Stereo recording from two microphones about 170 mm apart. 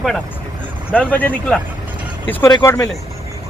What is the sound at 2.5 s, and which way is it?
Speech, 20° left (ahead or behind).